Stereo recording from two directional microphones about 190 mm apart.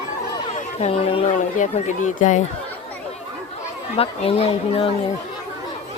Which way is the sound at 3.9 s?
30° left (ahead or behind).